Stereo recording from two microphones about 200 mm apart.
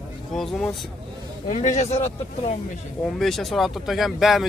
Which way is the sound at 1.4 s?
35° left (ahead or behind).